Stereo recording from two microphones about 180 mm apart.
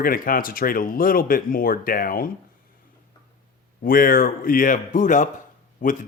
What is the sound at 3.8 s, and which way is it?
Speech, 50° left (ahead or behind).